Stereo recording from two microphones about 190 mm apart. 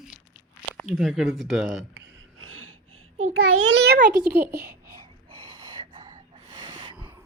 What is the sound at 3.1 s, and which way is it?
A child's voice, 90° right.